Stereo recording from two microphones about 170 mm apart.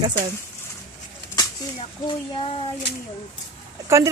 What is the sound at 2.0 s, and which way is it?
Speech, 30° left (ahead or behind).